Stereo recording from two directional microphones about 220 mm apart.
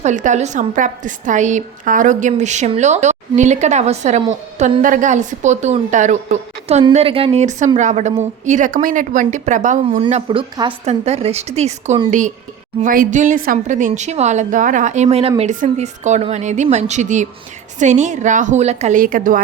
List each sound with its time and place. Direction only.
0.0 s a woman's voice: 35° right (ahead or behind)